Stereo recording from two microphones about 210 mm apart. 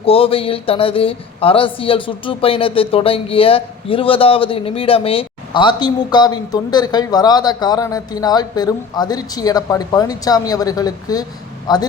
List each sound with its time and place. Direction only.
0.0 s speech: 25° left (ahead or behind)